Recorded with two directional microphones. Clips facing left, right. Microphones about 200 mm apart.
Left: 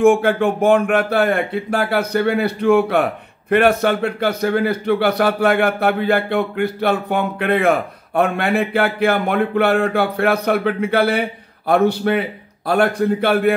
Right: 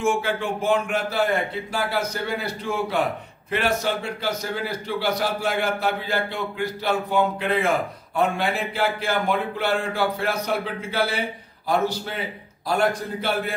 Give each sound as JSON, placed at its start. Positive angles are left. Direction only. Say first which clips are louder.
{"t": 0.0, "sound": "speech", "louder": "left 10 dB", "side_deg": 55}